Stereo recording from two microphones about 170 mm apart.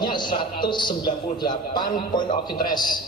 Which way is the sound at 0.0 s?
25° left (ahead or behind).